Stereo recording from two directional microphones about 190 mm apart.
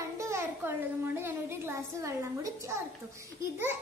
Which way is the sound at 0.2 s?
15° right (ahead or behind).